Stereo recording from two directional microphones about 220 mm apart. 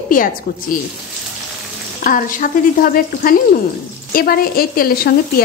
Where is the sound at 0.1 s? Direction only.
40° left (ahead or behind).